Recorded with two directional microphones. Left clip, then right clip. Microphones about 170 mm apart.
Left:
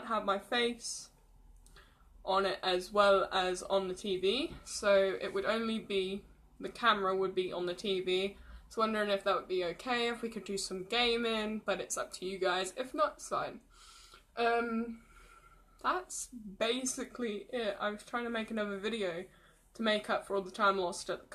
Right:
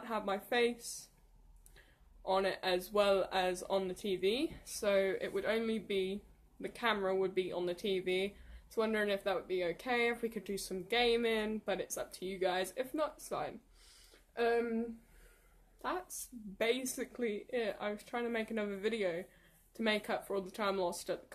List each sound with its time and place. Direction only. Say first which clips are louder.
0.0 s speech: left 4 dB; 20° right (ahead or behind)
2.2 s speech: left 2 dB; 15° right (ahead or behind)
10.4 s speech: left 3 dB; 50° right (ahead or behind)
10.7 s speech: even; 15° right (ahead or behind)
14.3 s a sound: left 2 dB; 15° right (ahead or behind)
16.5 s speech: left 1 dB; 15° right (ahead or behind)